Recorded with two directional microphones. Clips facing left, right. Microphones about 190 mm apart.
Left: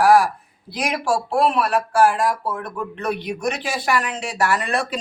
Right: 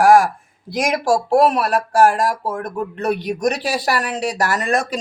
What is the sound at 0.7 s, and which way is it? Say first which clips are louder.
Speech: right 5 dB; 45° right (ahead or behind).